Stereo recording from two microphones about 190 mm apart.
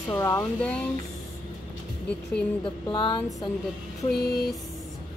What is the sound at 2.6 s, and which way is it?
Speech, 25° left (ahead or behind).